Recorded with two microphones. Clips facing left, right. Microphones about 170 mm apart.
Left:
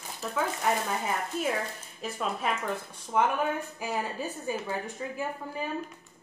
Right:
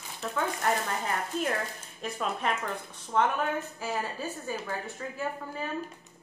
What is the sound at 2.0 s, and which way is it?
A woman's voice, centre (ahead or behind).